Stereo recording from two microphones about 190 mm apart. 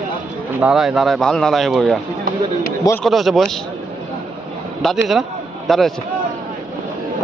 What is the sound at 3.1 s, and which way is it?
Speech, centre (ahead or behind).